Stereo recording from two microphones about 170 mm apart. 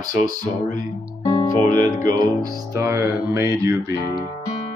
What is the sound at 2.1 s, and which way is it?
Music, 20° right (ahead or behind).